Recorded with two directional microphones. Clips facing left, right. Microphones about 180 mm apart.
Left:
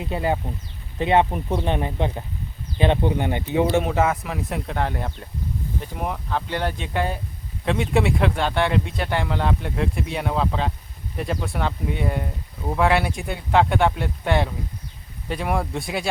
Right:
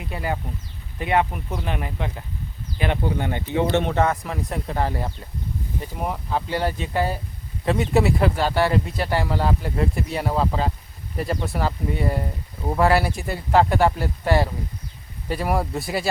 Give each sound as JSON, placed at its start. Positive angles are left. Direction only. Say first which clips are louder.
{"t": 0.0, "sound": "speech", "louder": "left 4 dB", "side_deg": 25}